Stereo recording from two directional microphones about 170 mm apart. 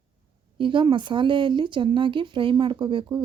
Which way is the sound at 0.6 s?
30° right (ahead or behind).